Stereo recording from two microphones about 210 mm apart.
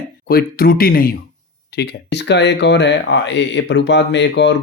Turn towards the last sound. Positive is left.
turn(degrees=55)  # may be behind; listen again after turning